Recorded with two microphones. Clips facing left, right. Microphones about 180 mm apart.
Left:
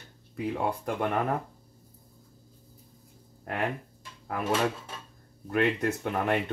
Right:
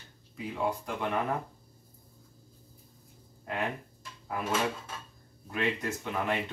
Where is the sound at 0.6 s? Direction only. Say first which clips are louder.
Even; 55° left (ahead or behind).